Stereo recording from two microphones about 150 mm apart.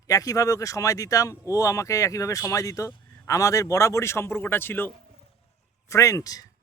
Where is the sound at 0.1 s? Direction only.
25° left (ahead or behind).